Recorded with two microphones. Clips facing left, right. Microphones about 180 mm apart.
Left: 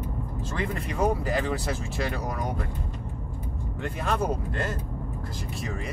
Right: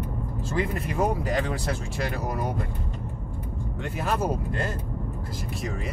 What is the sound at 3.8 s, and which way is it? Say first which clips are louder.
Speech: even; 5° right (ahead or behind).